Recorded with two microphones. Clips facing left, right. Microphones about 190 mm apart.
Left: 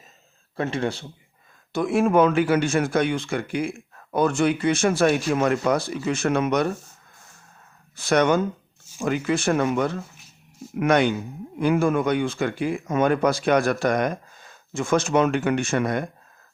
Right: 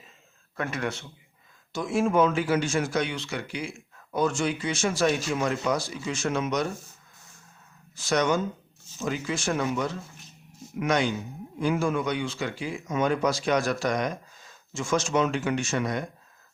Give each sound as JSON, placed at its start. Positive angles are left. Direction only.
{"t": 0.5, "sound": "speech", "side_deg": 30}
{"t": 1.7, "sound": "speech", "side_deg": 60}
{"t": 7.9, "sound": "speech", "side_deg": 60}